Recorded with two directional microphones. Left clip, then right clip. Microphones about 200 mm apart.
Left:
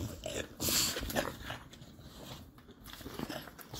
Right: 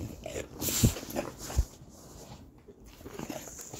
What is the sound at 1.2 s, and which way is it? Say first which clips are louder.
Dog: left 1 dB; 10° left (ahead or behind).